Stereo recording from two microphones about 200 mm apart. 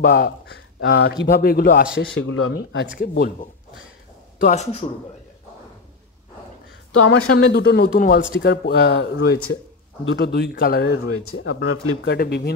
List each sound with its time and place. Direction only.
0.0 s speech: 50° left (ahead or behind)
0.7 s speech: 70° left (ahead or behind); by 1.9 s 45° left (ahead or behind)
2.1 s speech: 90° left
2.5 s speech: 60° left (ahead or behind)
3.0 s speech: 45° left (ahead or behind)
7.1 s speech: 90° left
7.5 s speech: 55° left (ahead or behind)
8.2 s speech: 65° left (ahead or behind)
11.1 s speech: 90° left
12.1 s speech: 55° left (ahead or behind)